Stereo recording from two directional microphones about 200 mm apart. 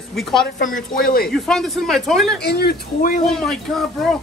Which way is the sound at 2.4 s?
55° left (ahead or behind).